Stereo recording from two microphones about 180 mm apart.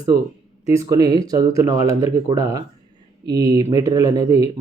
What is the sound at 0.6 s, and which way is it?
Speech, 20° right (ahead or behind).